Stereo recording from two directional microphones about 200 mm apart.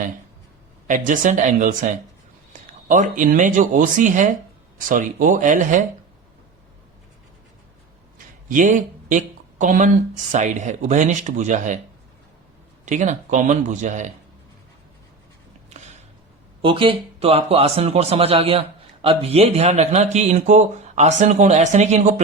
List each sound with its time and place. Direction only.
0.9 s speech: 40° right (ahead or behind)
8.4 s speech: 40° right (ahead or behind)
12.8 s speech: 35° right (ahead or behind)
16.6 s a man's voice: 25° right (ahead or behind)